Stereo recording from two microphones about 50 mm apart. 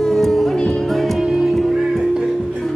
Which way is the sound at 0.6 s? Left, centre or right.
Centre.